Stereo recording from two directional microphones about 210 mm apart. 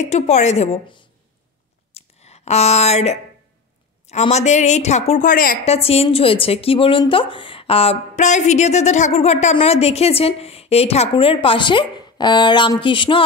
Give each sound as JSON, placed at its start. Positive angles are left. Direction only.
{"t": 0.0, "sound": "a woman's voice", "side_deg": 35}
{"t": 2.0, "sound": "a sound", "side_deg": 30}
{"t": 4.1, "sound": "a woman's voice", "side_deg": 30}
{"t": 5.7, "sound": "speech", "side_deg": 30}